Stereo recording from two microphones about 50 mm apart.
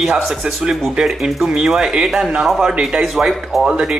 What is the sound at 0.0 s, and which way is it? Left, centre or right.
Speech, centre.